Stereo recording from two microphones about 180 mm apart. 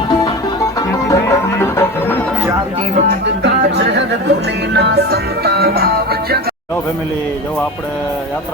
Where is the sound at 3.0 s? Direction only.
70° right (ahead or behind).